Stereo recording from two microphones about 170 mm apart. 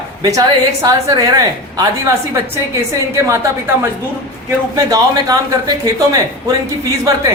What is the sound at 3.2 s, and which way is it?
A woman's voice, 15° right (ahead or behind).